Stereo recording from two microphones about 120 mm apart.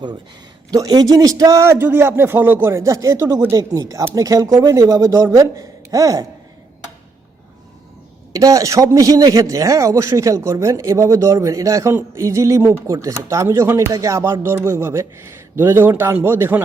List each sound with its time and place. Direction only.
0.7 s a man's voice: 35° right (ahead or behind)
8.3 s a man's voice: 30° right (ahead or behind)